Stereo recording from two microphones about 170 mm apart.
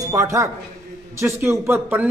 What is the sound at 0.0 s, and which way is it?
A woman's voice, 20° right (ahead or behind).